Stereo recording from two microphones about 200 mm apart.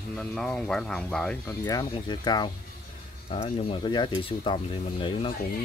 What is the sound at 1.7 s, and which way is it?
Speech, 20° left (ahead or behind).